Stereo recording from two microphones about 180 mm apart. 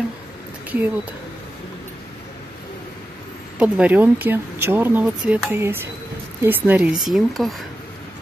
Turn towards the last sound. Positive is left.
turn(degrees=0)  # may be behind; listen again after turning